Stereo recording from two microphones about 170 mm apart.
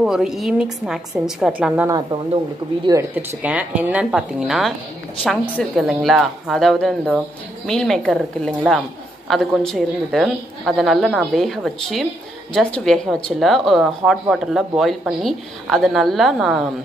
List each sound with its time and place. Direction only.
0.0 s a woman's voice: 5° right (ahead or behind)
1.9 s a woman's voice: 20° right (ahead or behind); by 16.6 s centre (ahead or behind)